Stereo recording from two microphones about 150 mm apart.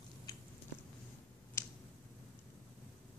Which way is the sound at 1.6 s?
20° left (ahead or behind).